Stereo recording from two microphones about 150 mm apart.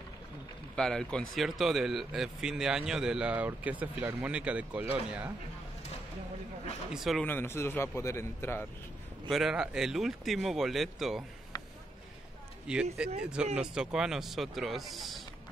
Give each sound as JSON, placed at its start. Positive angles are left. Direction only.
{"t": 0.7, "sound": "speech", "side_deg": 5}
{"t": 6.9, "sound": "speech", "side_deg": 0}
{"t": 7.2, "sound": "a man's voice", "side_deg": 15}
{"t": 9.3, "sound": "speech", "side_deg": -5}
{"t": 12.7, "sound": "speech", "side_deg": -5}